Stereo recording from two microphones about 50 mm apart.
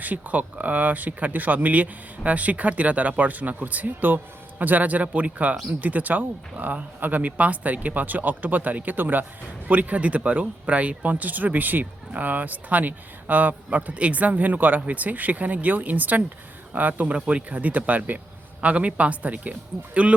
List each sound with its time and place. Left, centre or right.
0.0 s speech: right
17.2 s speech: right